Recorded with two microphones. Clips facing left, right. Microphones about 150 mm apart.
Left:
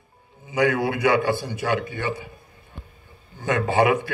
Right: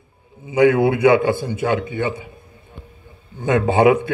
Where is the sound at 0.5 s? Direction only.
20° right (ahead or behind).